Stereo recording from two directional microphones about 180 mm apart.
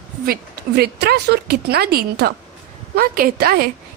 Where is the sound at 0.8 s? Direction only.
65° right (ahead or behind).